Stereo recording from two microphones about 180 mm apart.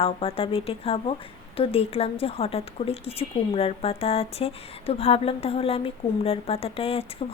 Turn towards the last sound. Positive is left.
turn(degrees=35)  # may be behind; listen again after turning